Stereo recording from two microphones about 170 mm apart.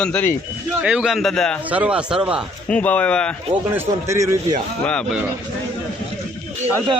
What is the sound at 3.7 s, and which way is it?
Speech, 15° right (ahead or behind).